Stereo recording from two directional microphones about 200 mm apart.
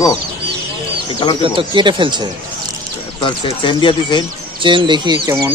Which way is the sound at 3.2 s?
25° left (ahead or behind).